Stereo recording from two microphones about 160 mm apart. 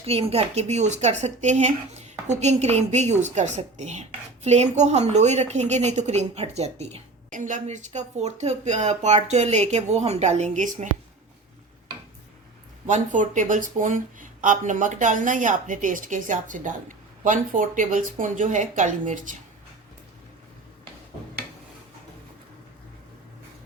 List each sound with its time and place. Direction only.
0.0 s a woman's voice: 40° right (ahead or behind)
12.9 s a woman's voice: 50° right (ahead or behind)